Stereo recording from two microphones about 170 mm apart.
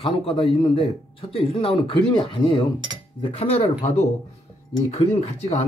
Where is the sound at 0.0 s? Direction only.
35° left (ahead or behind).